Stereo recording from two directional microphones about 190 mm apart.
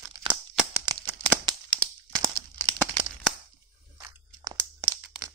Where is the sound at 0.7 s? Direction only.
20° right (ahead or behind).